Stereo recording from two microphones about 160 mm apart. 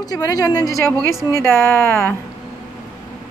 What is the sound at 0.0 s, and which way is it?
Speech, 25° left (ahead or behind).